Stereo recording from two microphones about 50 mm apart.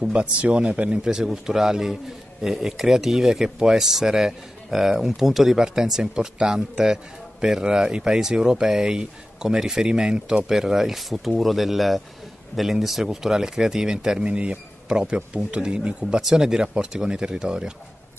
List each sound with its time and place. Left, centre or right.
0.0 s a man's voice: right